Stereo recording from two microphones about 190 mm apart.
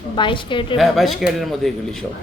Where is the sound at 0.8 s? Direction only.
Centre (ahead or behind).